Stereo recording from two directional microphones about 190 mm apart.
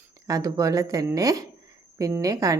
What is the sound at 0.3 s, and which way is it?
Speech, 15° right (ahead or behind).